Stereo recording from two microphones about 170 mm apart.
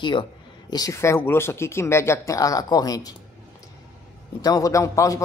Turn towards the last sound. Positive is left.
turn(degrees=20)  # may be behind; listen again after turning